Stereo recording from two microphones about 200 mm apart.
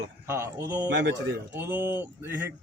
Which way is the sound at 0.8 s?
60° right (ahead or behind).